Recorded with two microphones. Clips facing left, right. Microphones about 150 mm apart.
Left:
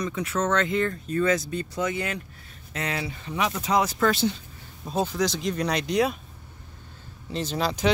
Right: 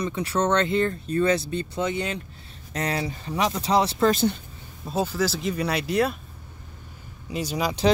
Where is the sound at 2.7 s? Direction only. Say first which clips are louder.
Right 3 dB; 40° right (ahead or behind).